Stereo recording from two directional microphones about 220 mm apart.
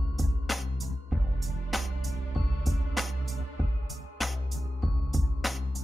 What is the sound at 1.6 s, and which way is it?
Music, centre (ahead or behind).